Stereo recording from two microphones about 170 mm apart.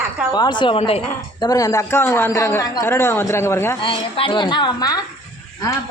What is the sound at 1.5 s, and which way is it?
Speech, 20° left (ahead or behind).